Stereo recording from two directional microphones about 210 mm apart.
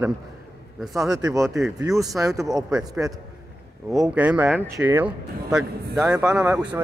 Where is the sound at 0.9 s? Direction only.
15° right (ahead or behind).